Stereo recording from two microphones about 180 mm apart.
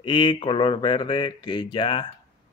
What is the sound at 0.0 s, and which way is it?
A man's voice, 30° left (ahead or behind).